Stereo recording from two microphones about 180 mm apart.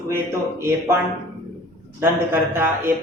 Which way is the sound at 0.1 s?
15° right (ahead or behind).